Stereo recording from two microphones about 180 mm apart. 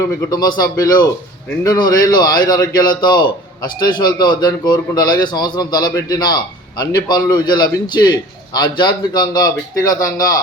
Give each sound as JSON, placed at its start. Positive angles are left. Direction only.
{"t": 0.3, "sound": "a man's voice", "side_deg": 20}